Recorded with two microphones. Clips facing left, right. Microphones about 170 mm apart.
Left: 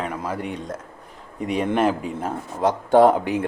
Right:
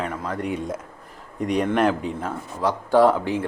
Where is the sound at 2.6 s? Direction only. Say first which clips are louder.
Left 2 dB; 20° left (ahead or behind).